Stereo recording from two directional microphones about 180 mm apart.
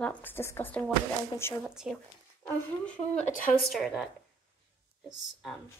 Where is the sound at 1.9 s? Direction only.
5° right (ahead or behind).